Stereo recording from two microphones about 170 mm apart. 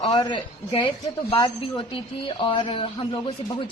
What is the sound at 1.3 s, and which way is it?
Speech, 25° left (ahead or behind).